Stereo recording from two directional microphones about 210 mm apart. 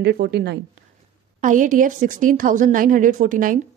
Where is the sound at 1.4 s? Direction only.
40° right (ahead or behind).